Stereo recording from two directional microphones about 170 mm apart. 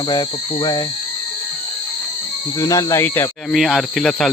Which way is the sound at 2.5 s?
20° left (ahead or behind).